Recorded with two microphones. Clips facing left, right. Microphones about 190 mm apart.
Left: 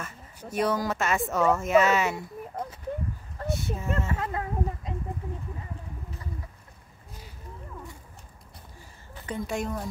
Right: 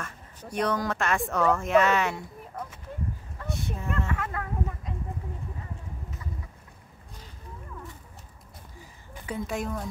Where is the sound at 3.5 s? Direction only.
Centre (ahead or behind).